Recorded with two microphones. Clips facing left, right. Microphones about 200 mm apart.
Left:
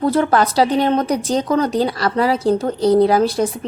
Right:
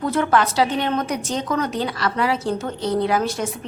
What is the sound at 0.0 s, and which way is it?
A woman's voice, 35° left (ahead or behind).